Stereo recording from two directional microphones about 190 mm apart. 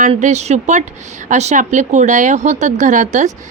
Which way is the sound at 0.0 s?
40° right (ahead or behind).